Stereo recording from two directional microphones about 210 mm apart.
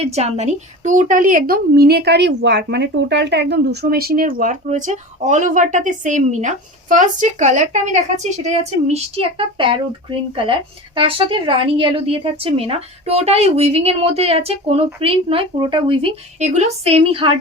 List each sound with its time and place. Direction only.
0.0 s a woman's voice: 30° right (ahead or behind)
10.9 s a woman's voice: 25° right (ahead or behind)